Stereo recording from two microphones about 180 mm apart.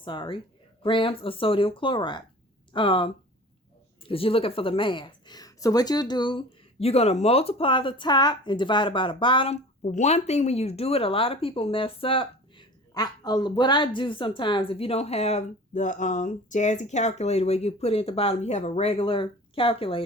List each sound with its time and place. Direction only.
0.0 s a woman's voice: 25° left (ahead or behind)